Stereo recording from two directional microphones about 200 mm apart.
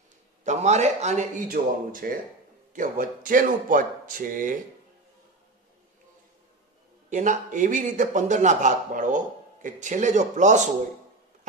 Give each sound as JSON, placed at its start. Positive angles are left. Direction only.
{"t": 0.4, "sound": "a man's voice", "side_deg": -35}
{"t": 7.1, "sound": "a man's voice", "side_deg": -40}